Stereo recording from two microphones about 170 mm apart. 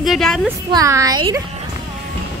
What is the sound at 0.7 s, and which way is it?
Speech, 20° right (ahead or behind).